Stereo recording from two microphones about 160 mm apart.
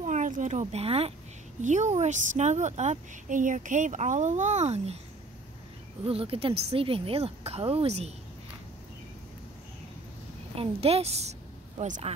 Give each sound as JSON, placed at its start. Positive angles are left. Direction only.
{"t": 0.0, "sound": "speech", "side_deg": -50}
{"t": 1.6, "sound": "a woman's voice", "side_deg": -50}
{"t": 6.0, "sound": "speech", "side_deg": -35}
{"t": 10.5, "sound": "a woman's voice", "side_deg": -40}